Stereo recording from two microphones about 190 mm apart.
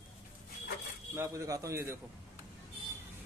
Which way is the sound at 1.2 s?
15° right (ahead or behind).